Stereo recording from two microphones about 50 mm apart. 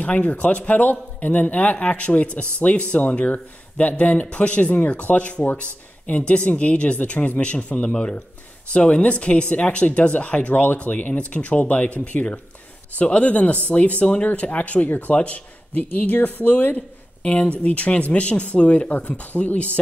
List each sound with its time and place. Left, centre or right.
0.0 s speech: left